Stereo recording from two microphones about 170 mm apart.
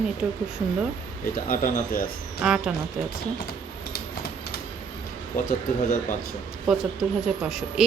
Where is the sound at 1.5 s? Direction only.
55° left (ahead or behind).